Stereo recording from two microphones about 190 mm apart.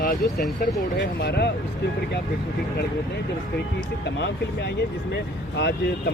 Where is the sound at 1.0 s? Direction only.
60° left (ahead or behind).